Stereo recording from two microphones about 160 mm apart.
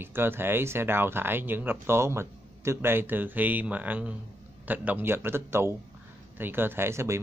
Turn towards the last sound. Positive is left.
turn(degrees=-15)  # may be behind; listen again after turning